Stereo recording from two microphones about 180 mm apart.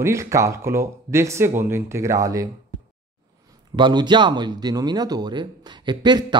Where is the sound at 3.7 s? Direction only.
25° right (ahead or behind).